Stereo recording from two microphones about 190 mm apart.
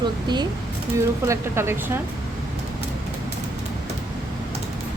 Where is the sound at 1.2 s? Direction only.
15° right (ahead or behind).